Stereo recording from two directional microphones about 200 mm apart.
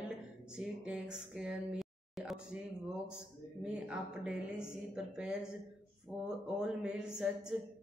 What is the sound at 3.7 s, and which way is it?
A woman's voice, 5° right (ahead or behind).